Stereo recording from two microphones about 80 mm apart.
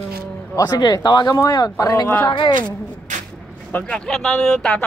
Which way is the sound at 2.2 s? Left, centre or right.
Left.